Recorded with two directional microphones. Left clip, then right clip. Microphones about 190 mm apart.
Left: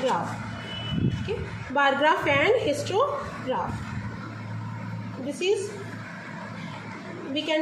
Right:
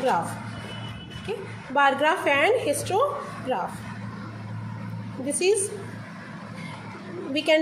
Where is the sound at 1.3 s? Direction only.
10° right (ahead or behind).